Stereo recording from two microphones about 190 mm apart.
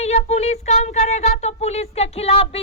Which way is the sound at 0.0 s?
35° left (ahead or behind).